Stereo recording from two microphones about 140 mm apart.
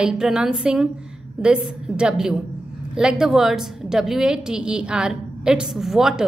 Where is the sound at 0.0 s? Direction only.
5° right (ahead or behind).